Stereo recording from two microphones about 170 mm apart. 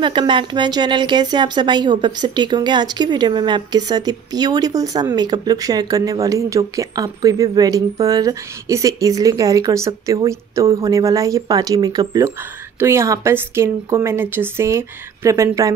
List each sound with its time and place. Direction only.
0.0 s a woman's voice: 30° right (ahead or behind)